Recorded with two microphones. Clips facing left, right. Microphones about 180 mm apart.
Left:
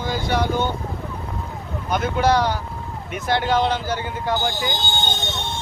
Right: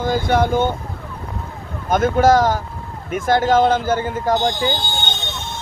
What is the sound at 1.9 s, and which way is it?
Speech, 45° right (ahead or behind).